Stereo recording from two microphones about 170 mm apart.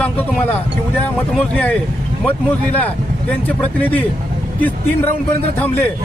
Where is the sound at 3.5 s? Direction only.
10° left (ahead or behind).